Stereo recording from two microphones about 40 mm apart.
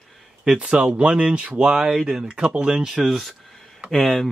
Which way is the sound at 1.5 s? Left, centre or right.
Centre.